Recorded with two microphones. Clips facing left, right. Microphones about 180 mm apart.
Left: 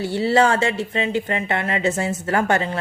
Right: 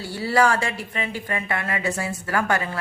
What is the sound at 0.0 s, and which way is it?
A woman's voice, 25° left (ahead or behind).